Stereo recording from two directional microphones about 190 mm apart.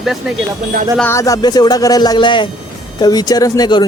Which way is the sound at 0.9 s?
15° left (ahead or behind).